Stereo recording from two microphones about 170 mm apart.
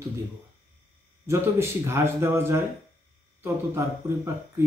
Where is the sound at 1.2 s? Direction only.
15° right (ahead or behind).